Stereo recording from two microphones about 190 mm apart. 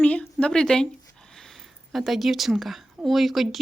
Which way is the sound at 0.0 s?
5° left (ahead or behind).